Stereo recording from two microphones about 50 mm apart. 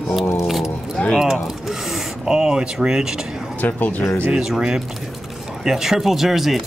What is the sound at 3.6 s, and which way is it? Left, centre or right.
Speech, left.